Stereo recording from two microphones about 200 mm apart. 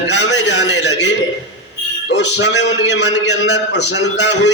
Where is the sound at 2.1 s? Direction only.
60° left (ahead or behind).